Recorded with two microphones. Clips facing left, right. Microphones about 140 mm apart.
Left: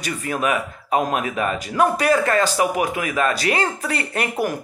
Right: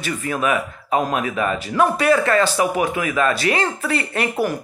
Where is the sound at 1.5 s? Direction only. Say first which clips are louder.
Even; 40° left (ahead or behind).